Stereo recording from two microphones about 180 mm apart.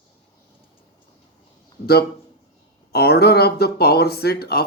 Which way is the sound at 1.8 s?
60° left (ahead or behind).